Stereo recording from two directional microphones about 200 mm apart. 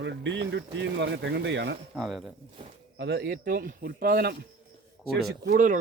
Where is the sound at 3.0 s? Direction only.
55° right (ahead or behind).